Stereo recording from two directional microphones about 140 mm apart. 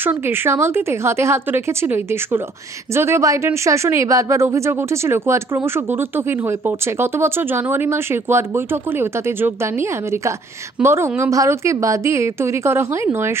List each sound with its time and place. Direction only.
0.0 s a woman's voice: 15° right (ahead or behind)